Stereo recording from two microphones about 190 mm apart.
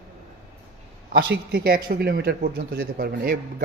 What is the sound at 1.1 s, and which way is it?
A man's voice, 55° right (ahead or behind).